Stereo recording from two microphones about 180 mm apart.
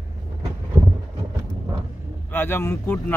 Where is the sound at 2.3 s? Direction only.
10° left (ahead or behind).